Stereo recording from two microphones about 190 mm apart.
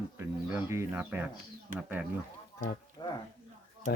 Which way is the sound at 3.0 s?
25° left (ahead or behind).